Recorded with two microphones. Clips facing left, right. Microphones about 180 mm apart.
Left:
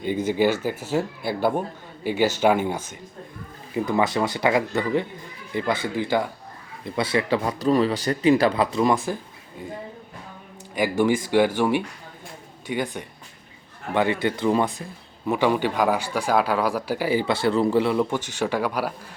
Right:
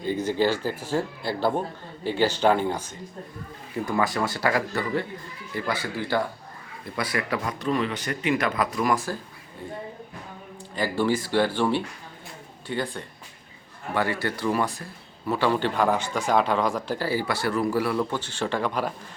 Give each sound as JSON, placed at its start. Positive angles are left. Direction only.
{"t": 0.9, "sound": "speech", "side_deg": 10}
{"t": 3.8, "sound": "speech", "side_deg": 20}
{"t": 10.8, "sound": "speech", "side_deg": 15}